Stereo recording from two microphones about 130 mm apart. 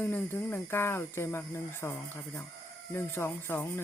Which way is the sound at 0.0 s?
15° left (ahead or behind).